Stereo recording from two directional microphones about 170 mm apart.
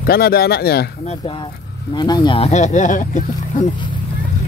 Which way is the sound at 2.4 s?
45° left (ahead or behind).